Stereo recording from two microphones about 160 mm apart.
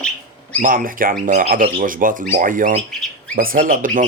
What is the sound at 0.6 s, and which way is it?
Speech, 60° right (ahead or behind).